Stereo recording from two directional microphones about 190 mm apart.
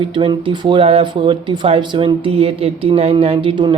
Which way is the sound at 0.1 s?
25° right (ahead or behind).